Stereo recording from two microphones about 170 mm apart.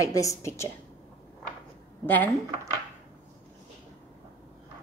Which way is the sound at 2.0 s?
10° left (ahead or behind).